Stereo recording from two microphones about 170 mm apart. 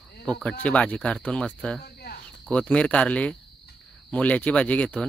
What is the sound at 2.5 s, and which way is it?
Speech, 5° left (ahead or behind).